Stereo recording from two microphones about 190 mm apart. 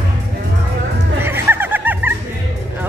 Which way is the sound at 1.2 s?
10° right (ahead or behind).